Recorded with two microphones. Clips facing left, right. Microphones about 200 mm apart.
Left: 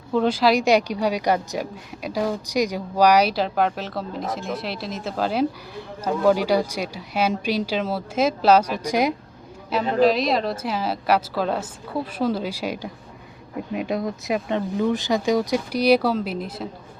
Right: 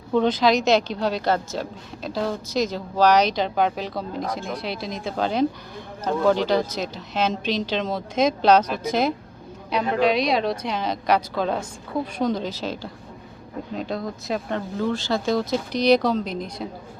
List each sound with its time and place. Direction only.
0.1 s speech: 5° left (ahead or behind)
9.9 s a woman's voice: centre (ahead or behind)